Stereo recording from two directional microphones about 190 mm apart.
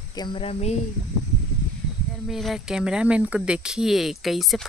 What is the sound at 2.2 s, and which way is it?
Speech, centre (ahead or behind).